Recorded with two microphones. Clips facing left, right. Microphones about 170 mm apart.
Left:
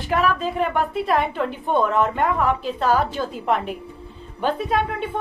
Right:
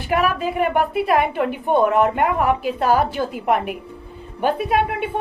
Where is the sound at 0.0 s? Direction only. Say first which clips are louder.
Right 1 dB; 10° right (ahead or behind).